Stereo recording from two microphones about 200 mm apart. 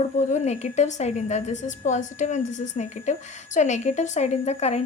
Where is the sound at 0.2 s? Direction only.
35° left (ahead or behind).